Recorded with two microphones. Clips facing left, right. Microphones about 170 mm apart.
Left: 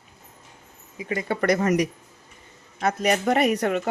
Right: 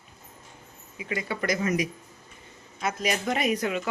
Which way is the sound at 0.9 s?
35° left (ahead or behind).